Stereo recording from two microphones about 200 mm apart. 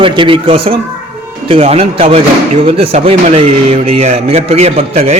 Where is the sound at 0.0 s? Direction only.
25° right (ahead or behind).